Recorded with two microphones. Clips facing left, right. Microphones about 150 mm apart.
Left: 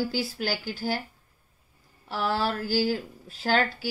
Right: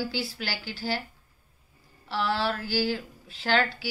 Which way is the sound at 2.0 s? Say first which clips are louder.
Even; 45° left (ahead or behind).